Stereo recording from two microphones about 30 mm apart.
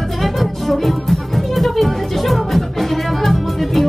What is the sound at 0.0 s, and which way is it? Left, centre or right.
Music, centre.